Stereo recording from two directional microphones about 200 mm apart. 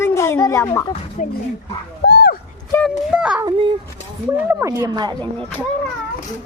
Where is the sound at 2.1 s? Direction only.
50° left (ahead or behind).